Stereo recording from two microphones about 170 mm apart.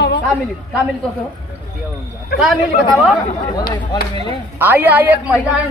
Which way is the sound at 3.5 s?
25° left (ahead or behind).